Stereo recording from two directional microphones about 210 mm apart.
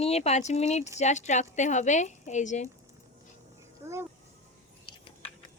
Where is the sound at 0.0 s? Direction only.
30° left (ahead or behind).